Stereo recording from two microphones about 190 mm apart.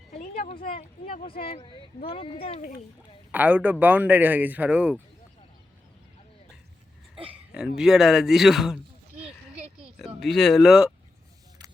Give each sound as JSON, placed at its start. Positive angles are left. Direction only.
{"t": 0.2, "sound": "a sound", "side_deg": 40}
{"t": 1.0, "sound": "speech", "side_deg": 40}
{"t": 1.3, "sound": "speech", "side_deg": 30}
{"t": 3.3, "sound": "a man's voice", "side_deg": -10}
{"t": 7.8, "sound": "speech", "side_deg": -5}